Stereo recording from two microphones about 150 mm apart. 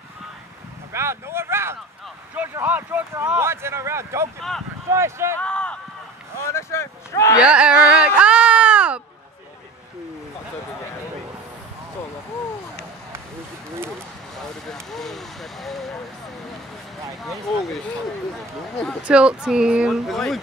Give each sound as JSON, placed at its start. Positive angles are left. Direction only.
{"t": 0.9, "sound": "a sound", "side_deg": -15}
{"t": 2.3, "sound": "speech", "side_deg": -15}
{"t": 4.4, "sound": "speech", "side_deg": 0}
{"t": 4.9, "sound": "speech", "side_deg": -20}
{"t": 5.4, "sound": "a sound", "side_deg": 5}
{"t": 6.5, "sound": "speech", "side_deg": 15}
{"t": 7.4, "sound": "a sound", "side_deg": -5}
{"t": 14.4, "sound": "vehicle", "side_deg": 5}
{"t": 19.0, "sound": "speech", "side_deg": -5}